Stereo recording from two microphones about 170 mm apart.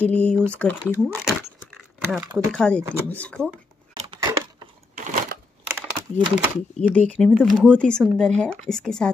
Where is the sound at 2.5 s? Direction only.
5° left (ahead or behind).